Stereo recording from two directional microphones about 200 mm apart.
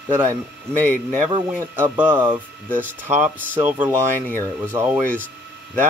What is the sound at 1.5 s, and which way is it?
Speech, 10° right (ahead or behind).